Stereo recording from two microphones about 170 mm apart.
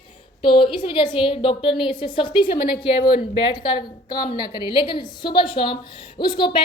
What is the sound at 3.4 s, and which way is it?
A woman's voice, 25° left (ahead or behind).